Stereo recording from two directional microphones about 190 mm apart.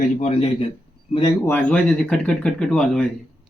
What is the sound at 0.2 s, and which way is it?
Speech, 30° left (ahead or behind).